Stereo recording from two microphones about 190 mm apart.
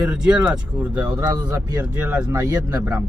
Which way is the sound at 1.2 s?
20° right (ahead or behind).